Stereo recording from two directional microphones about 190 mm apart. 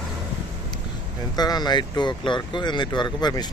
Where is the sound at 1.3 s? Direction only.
20° left (ahead or behind).